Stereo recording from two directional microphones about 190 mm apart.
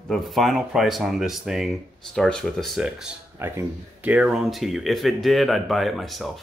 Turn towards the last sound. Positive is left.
turn(degrees=0)  # may be behind; listen again after turning